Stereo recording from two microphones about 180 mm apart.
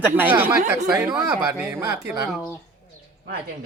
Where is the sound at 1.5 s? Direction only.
10° right (ahead or behind).